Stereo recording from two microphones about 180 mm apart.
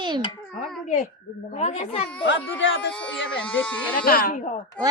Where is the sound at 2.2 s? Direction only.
90° left.